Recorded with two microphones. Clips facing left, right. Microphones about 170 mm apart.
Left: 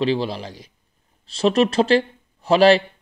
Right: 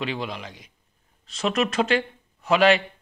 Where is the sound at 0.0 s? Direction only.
30° left (ahead or behind).